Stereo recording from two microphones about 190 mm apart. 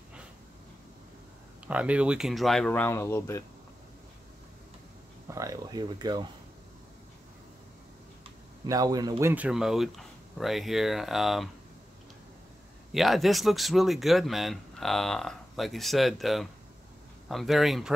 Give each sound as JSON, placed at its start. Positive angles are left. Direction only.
{"t": 1.7, "sound": "speech", "side_deg": -5}
{"t": 5.3, "sound": "speech", "side_deg": -15}
{"t": 8.6, "sound": "speech", "side_deg": -20}
{"t": 9.3, "sound": "speech", "side_deg": -5}
{"t": 12.9, "sound": "speech", "side_deg": 0}